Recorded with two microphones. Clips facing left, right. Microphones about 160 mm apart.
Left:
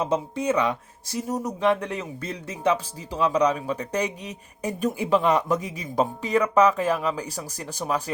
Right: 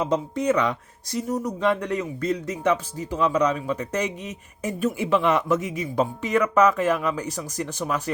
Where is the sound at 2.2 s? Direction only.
30° left (ahead or behind).